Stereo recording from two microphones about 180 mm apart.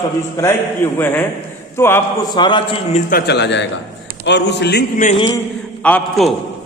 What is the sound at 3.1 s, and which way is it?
A man's voice, 65° left (ahead or behind).